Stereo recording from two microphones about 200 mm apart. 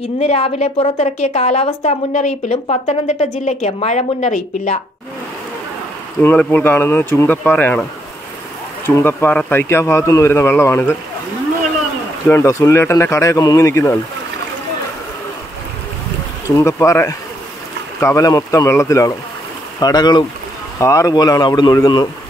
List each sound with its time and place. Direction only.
0.2 s a woman's voice: 30° left (ahead or behind)
6.2 s speech: 10° left (ahead or behind)
8.8 s speech: 10° left (ahead or behind)
12.3 s speech: 15° left (ahead or behind)
16.5 s speech: 15° left (ahead or behind)